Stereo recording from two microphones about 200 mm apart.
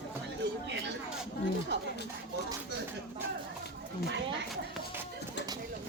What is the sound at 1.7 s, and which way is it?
Speech, 60° right (ahead or behind).